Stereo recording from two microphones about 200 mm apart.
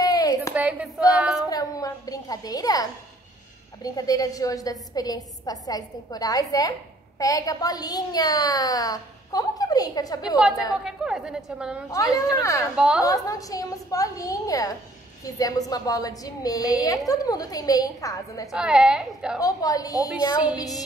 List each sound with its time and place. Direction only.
0.0 s a sound: 20° left (ahead or behind)
0.6 s a woman's voice: 5° right (ahead or behind)
1.5 s a woman's voice: 20° left (ahead or behind)
10.7 s a woman's voice: 5° right (ahead or behind)
11.9 s a woman's voice: 15° left (ahead or behind)
12.7 s a woman's voice: 5° right (ahead or behind)
13.0 s a woman's voice: 15° left (ahead or behind)
18.5 s a woman's voice: 5° right (ahead or behind)
19.4 s a woman's voice: 20° left (ahead or behind)